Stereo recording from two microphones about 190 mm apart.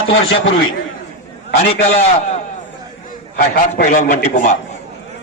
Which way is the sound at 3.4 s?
45° left (ahead or behind).